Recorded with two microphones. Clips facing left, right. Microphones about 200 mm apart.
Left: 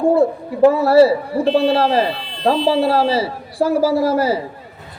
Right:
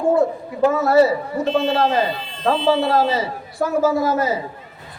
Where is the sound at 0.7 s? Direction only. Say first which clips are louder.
Left 2 dB; 30° left (ahead or behind).